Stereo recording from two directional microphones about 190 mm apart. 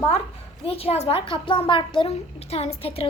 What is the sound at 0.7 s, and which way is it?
A child's voice, 30° left (ahead or behind).